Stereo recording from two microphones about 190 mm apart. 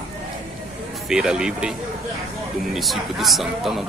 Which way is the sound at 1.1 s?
5° right (ahead or behind).